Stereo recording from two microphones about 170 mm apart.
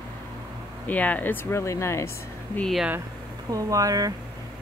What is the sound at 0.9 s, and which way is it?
Speech, 10° left (ahead or behind).